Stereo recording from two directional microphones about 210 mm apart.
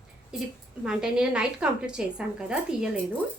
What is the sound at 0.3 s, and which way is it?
A woman's voice, 5° right (ahead or behind).